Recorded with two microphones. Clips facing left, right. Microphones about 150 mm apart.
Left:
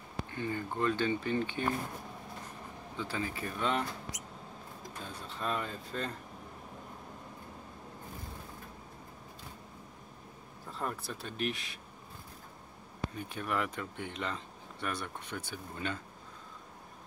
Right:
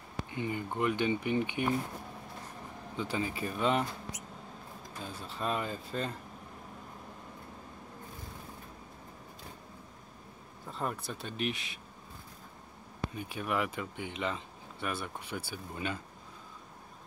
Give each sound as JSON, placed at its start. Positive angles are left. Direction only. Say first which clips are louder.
{"t": 0.3, "sound": "speech", "louder": "right 1 dB", "side_deg": -15}
{"t": 3.0, "sound": "speech", "louder": "right 3 dB", "side_deg": -20}
{"t": 5.0, "sound": "speech", "louder": "right 2 dB", "side_deg": -5}
{"t": 10.8, "sound": "speech", "louder": "right 2 dB", "side_deg": 0}
{"t": 13.1, "sound": "speech", "louder": "right 2 dB", "side_deg": -5}